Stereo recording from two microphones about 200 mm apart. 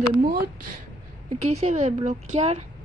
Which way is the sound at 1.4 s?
35° right (ahead or behind).